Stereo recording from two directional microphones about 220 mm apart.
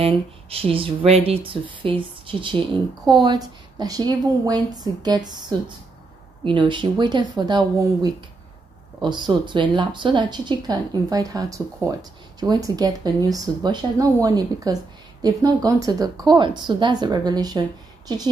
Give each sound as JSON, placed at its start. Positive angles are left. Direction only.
{"t": 0.0, "sound": "speech", "side_deg": -25}